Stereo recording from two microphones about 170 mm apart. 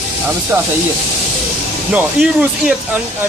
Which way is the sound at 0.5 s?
15° right (ahead or behind).